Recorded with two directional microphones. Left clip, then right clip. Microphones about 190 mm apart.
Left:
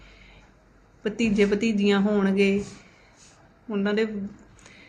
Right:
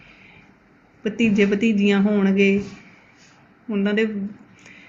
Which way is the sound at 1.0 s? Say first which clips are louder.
Right 3 dB; centre (ahead or behind).